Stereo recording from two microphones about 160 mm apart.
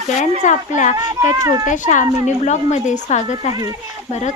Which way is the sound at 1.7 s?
50° left (ahead or behind).